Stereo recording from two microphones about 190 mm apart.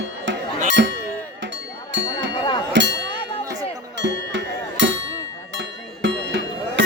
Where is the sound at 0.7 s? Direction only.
70° right (ahead or behind).